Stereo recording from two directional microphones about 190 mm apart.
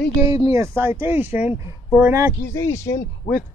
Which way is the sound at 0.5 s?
15° right (ahead or behind).